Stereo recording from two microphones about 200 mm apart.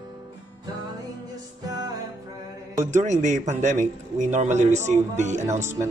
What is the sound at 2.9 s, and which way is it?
A man's voice, 35° right (ahead or behind).